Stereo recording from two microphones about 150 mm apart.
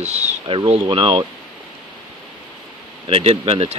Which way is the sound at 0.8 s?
35° right (ahead or behind).